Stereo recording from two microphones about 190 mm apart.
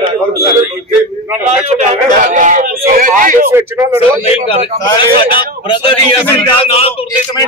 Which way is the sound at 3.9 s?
30° left (ahead or behind).